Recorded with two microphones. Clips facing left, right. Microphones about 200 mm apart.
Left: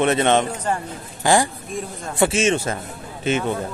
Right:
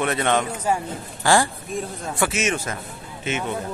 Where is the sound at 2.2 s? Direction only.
30° left (ahead or behind).